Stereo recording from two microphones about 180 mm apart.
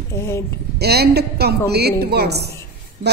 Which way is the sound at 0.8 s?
65° right (ahead or behind).